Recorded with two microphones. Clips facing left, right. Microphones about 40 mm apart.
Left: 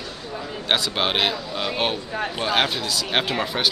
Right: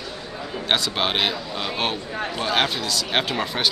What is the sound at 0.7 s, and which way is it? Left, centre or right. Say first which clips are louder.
Speech: left 1 dB; centre.